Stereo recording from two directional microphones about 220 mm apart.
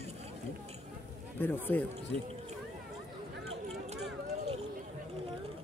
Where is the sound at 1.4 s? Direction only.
10° left (ahead or behind).